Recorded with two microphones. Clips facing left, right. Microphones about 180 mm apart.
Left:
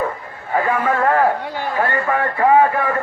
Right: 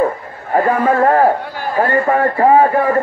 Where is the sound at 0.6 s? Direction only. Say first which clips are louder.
Right 5 dB; 40° right (ahead or behind).